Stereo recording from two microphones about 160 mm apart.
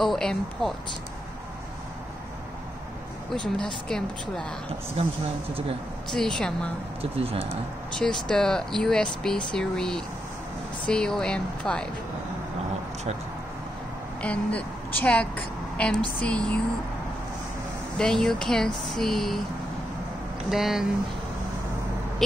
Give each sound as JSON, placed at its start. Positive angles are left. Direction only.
{"t": 0.0, "sound": "speech", "side_deg": 0}
{"t": 3.9, "sound": "speech", "side_deg": 5}
{"t": 5.0, "sound": "speech", "side_deg": -40}
{"t": 6.0, "sound": "speech", "side_deg": 5}
{"t": 7.0, "sound": "speech", "side_deg": -40}
{"t": 7.9, "sound": "speech", "side_deg": 5}
{"t": 14.2, "sound": "a woman's voice", "side_deg": 10}
{"t": 17.9, "sound": "speech", "side_deg": 5}
{"t": 20.4, "sound": "speech", "side_deg": 0}